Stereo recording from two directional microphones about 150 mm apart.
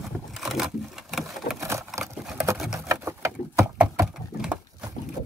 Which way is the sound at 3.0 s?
20° right (ahead or behind).